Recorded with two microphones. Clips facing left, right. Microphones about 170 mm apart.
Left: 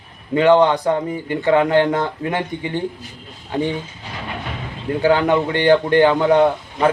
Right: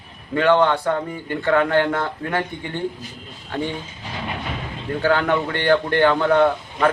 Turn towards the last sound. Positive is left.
turn(degrees=15)  # may be behind; listen again after turning